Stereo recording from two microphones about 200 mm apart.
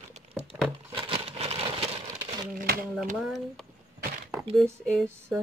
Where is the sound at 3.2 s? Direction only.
Centre (ahead or behind).